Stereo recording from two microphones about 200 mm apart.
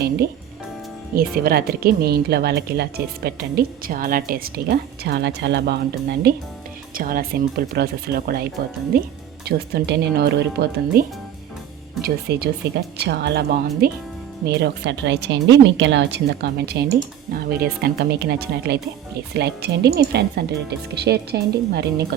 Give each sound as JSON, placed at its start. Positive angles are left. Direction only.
{"t": 1.1, "sound": "speech", "side_deg": -50}
{"t": 12.0, "sound": "speech", "side_deg": -50}